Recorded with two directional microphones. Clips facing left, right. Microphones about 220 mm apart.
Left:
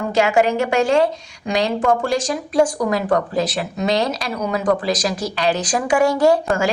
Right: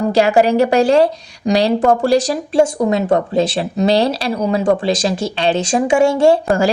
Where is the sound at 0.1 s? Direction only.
35° right (ahead or behind).